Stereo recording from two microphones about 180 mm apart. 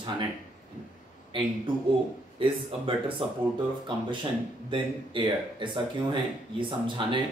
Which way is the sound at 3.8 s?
25° right (ahead or behind).